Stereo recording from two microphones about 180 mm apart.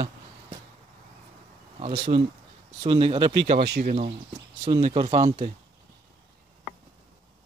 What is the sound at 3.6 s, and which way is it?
Speech, 60° right (ahead or behind).